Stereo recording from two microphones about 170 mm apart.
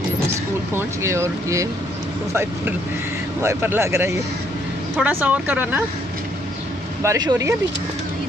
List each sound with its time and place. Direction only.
0.7 s speech: 15° right (ahead or behind)
3.4 s speech: 15° right (ahead or behind)
7.0 s speech: 20° right (ahead or behind)